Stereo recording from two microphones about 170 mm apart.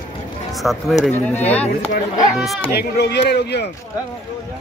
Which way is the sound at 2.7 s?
80° left.